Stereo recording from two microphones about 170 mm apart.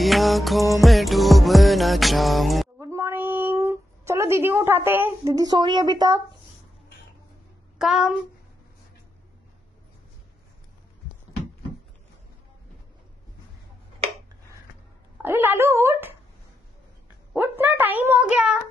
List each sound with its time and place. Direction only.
0.0 s music: centre (ahead or behind)
2.8 s a sound: 15° right (ahead or behind)
7.8 s speech: 5° right (ahead or behind)
15.2 s a child's voice: 15° right (ahead or behind)
17.3 s a child's voice: 10° right (ahead or behind)